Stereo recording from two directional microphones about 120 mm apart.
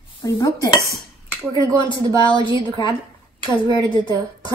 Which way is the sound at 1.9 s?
30° right (ahead or behind).